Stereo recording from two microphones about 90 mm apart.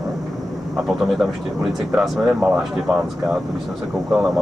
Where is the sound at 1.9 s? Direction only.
Centre (ahead or behind).